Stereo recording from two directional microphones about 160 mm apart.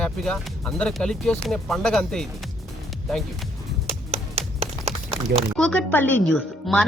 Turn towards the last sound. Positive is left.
turn(degrees=0)  # may be behind; listen again after turning